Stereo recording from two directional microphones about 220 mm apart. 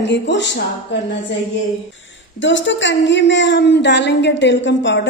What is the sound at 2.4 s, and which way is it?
A woman's voice, 55° left (ahead or behind).